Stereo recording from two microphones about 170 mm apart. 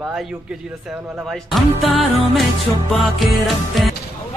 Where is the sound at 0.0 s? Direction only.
Centre (ahead or behind).